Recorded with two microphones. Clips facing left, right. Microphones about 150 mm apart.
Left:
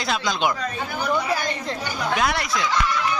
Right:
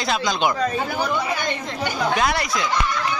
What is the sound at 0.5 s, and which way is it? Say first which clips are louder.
Speech: right 6 dB; 40° right (ahead or behind).